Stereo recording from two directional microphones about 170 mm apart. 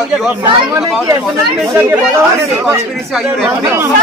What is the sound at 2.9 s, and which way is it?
Speech, centre (ahead or behind).